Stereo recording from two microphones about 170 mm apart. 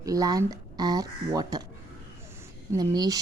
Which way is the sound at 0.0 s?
20° right (ahead or behind).